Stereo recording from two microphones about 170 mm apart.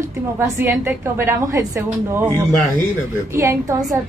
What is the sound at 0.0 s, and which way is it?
A woman's voice, 15° right (ahead or behind).